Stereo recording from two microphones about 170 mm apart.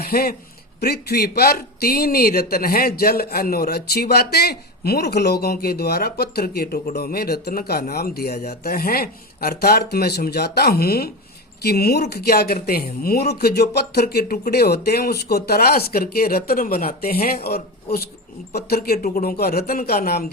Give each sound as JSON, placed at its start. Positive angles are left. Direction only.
{"t": 0.0, "sound": "a man's voice", "side_deg": 65}